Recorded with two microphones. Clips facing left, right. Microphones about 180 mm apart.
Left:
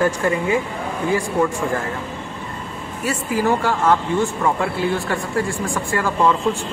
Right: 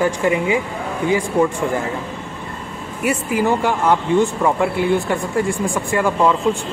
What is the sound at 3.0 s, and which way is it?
Speech, 20° right (ahead or behind).